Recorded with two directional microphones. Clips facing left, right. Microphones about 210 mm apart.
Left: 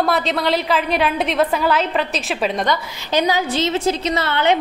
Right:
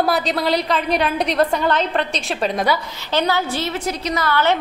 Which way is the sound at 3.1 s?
15° left (ahead or behind).